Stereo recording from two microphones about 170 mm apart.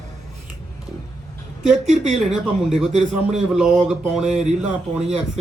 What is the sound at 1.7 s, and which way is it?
Speech, 5° right (ahead or behind).